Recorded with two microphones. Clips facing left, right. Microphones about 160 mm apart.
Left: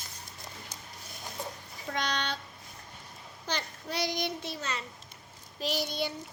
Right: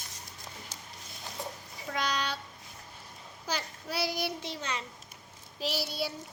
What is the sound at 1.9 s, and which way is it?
Speech, 5° right (ahead or behind).